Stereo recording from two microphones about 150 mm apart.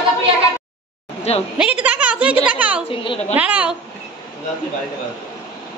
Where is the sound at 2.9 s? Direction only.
40° left (ahead or behind).